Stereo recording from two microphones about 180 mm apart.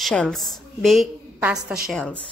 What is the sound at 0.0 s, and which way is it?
A woman's voice, 5° left (ahead or behind).